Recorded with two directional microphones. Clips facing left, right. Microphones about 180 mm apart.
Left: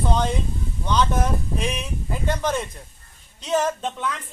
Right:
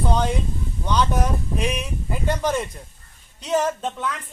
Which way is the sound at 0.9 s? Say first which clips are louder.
Even; 10° right (ahead or behind).